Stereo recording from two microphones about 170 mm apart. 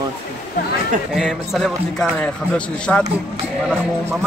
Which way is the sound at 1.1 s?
Centre (ahead or behind).